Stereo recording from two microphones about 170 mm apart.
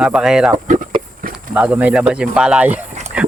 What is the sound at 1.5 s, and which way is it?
Speech, 10° right (ahead or behind).